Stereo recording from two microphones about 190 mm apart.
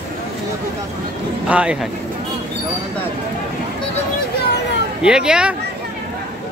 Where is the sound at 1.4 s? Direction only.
5° right (ahead or behind).